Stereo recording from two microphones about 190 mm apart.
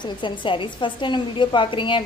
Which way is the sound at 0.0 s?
25° left (ahead or behind).